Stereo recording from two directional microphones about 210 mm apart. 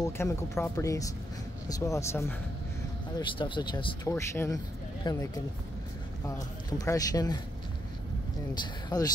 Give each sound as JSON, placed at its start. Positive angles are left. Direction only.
{"t": 0.0, "sound": "speech", "side_deg": 15}
{"t": 8.8, "sound": "speech", "side_deg": 20}